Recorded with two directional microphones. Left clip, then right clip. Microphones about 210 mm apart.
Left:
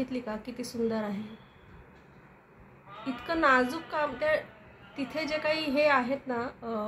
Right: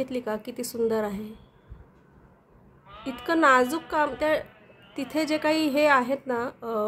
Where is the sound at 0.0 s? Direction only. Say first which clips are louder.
Right 5 dB; 60° right (ahead or behind).